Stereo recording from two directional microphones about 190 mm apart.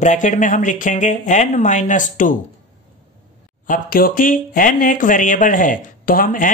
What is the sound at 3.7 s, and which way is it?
Speech, 50° left (ahead or behind).